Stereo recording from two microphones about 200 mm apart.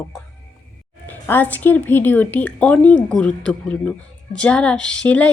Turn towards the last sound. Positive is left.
turn(degrees=5)  # may be behind; listen again after turning